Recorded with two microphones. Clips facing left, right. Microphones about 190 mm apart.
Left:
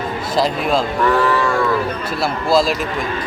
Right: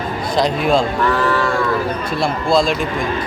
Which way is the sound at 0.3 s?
Centre (ahead or behind).